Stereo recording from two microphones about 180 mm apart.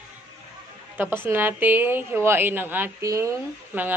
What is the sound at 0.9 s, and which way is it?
A woman's voice, 10° right (ahead or behind).